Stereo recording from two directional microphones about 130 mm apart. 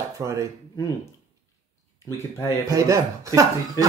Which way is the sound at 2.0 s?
25° left (ahead or behind).